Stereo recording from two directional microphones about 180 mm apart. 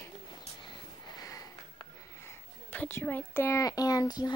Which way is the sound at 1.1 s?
20° left (ahead or behind).